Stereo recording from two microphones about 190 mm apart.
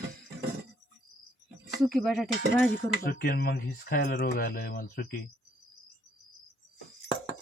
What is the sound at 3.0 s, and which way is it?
Speech, 50° left (ahead or behind).